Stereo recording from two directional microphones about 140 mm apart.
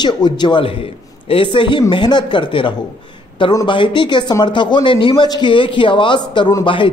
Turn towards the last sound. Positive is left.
turn(degrees=35)  # may be behind; listen again after turning